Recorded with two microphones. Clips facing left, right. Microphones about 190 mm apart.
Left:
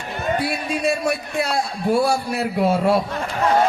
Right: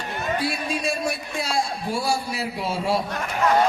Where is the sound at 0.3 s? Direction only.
60° left (ahead or behind).